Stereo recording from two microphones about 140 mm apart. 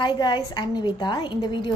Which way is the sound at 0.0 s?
30° left (ahead or behind).